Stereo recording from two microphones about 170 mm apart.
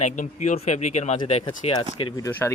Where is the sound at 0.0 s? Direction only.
45° left (ahead or behind).